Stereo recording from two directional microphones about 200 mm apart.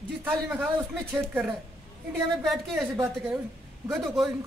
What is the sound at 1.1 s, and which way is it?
A man's voice, centre (ahead or behind).